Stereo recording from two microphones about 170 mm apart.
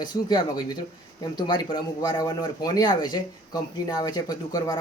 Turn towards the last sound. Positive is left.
turn(degrees=20)  # may be behind; listen again after turning